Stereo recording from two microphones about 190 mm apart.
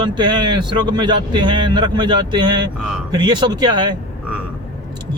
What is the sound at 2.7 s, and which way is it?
Speech, 5° right (ahead or behind).